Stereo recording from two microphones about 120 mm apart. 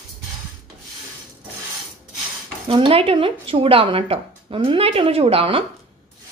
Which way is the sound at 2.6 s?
45° right (ahead or behind).